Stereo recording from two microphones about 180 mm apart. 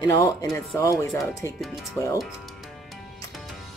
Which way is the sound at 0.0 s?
20° left (ahead or behind).